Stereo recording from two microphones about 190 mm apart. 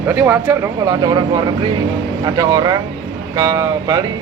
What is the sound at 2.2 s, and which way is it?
Speech, 20° right (ahead or behind).